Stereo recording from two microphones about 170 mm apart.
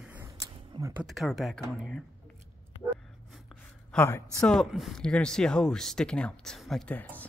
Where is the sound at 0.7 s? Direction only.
30° right (ahead or behind).